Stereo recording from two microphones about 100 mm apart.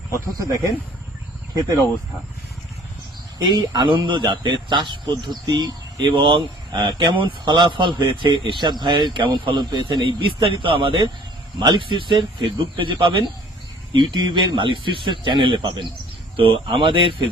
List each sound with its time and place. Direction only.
0.3 s speech: 35° right (ahead or behind)
3.3 s speech: 40° right (ahead or behind)